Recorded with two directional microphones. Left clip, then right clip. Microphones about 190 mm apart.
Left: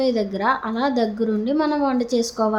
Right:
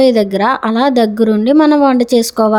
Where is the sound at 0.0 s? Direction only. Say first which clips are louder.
Right 10 dB; 45° right (ahead or behind).